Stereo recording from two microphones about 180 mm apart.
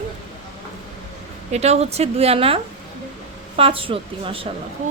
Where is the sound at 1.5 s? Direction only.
35° right (ahead or behind).